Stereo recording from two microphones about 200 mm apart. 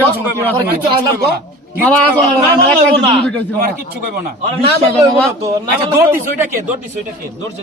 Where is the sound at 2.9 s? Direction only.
25° right (ahead or behind).